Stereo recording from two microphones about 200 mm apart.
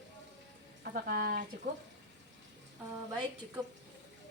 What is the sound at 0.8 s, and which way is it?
Speech, 45° right (ahead or behind).